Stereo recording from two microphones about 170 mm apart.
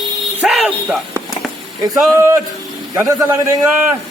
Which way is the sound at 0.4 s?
5° right (ahead or behind).